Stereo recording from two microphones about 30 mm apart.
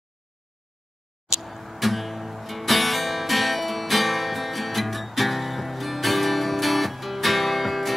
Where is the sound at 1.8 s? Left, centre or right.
Centre.